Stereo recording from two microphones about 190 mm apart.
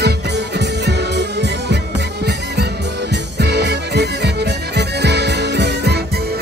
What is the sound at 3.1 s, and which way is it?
Music, 60° right (ahead or behind).